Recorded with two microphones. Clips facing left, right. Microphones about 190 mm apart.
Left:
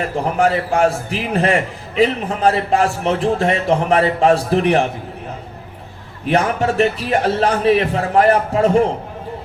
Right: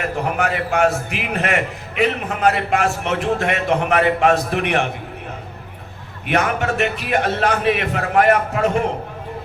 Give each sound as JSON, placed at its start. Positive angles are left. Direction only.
{"t": 0.0, "sound": "a man's voice", "side_deg": 30}
{"t": 6.2, "sound": "a man's voice", "side_deg": 30}